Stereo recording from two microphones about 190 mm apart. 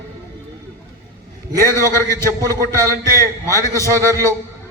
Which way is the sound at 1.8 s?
15° left (ahead or behind).